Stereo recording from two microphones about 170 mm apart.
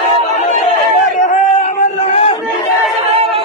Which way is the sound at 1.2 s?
45° left (ahead or behind).